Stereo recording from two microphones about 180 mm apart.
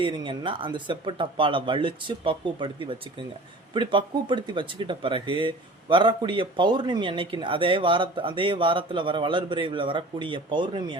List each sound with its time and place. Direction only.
0.0 s speech: 25° right (ahead or behind)